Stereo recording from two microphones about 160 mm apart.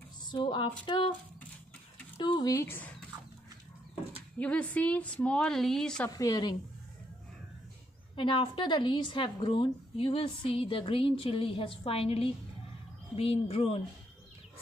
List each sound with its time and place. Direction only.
0.3 s a woman's voice: 30° left (ahead or behind)
2.1 s a sound: 30° left (ahead or behind)
2.5 s a woman's voice: 15° left (ahead or behind)
4.4 s a woman's voice: 10° left (ahead or behind)
6.0 s speech: 20° left (ahead or behind)
8.2 s a woman's voice: 30° left (ahead or behind)